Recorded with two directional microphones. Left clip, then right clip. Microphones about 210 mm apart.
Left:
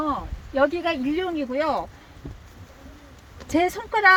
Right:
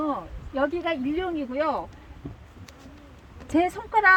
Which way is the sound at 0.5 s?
35° left (ahead or behind).